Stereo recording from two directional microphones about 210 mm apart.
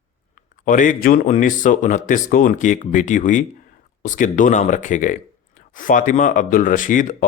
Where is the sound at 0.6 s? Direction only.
40° left (ahead or behind).